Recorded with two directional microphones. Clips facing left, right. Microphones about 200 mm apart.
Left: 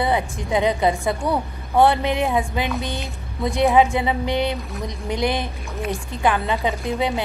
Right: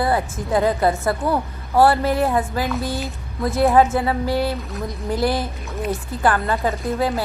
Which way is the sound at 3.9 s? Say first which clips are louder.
Right 1 dB; 20° left (ahead or behind).